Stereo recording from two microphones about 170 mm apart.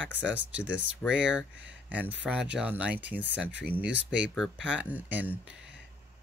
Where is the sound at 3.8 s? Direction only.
90° right.